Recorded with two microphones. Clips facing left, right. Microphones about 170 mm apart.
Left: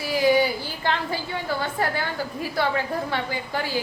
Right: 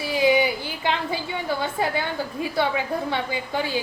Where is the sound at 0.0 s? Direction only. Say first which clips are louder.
Even; 20° right (ahead or behind).